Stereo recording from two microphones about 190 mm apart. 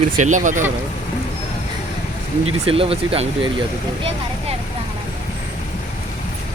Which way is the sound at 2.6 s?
30° right (ahead or behind).